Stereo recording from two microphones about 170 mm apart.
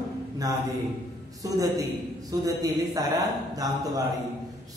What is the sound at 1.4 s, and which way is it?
A man's voice, 20° right (ahead or behind).